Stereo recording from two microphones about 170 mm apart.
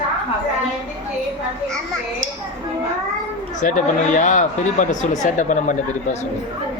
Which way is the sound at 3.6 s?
50° left (ahead or behind).